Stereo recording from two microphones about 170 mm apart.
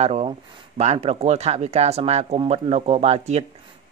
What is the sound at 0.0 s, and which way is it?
Speech, 40° right (ahead or behind).